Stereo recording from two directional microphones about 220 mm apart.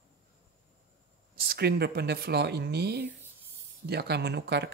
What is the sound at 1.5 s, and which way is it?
Speech, 45° right (ahead or behind).